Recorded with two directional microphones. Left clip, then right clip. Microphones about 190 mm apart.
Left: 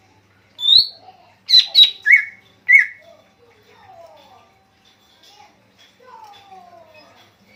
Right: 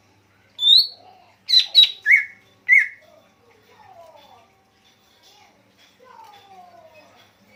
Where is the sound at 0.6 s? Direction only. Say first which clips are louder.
Left 1 dB; 5° right (ahead or behind).